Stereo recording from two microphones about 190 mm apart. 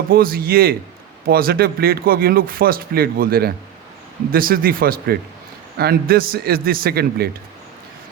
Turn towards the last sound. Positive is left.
turn(degrees=-55)  # may be behind; listen again after turning